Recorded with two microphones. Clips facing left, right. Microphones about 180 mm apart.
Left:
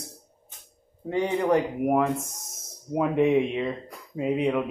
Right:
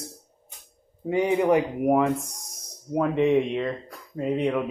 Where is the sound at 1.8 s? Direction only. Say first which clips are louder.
Right 2 dB; centre (ahead or behind).